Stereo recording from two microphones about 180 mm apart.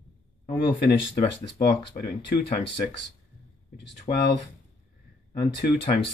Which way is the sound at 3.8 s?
70° left (ahead or behind).